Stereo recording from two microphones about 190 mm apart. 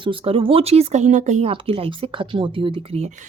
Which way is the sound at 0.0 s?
30° right (ahead or behind).